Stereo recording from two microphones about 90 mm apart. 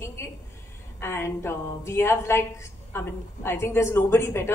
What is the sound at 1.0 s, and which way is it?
A woman's voice, 25° left (ahead or behind).